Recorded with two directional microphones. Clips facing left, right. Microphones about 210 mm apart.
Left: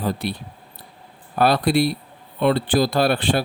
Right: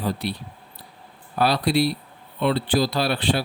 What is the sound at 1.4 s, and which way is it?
Speech, 50° left (ahead or behind).